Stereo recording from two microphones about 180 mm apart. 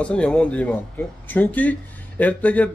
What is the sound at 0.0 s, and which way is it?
Speech, 5° left (ahead or behind).